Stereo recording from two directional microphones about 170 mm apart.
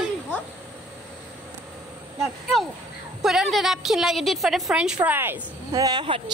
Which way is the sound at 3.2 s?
Centre (ahead or behind).